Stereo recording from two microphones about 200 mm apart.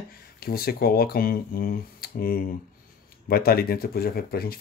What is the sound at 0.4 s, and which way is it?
Speech, 50° left (ahead or behind).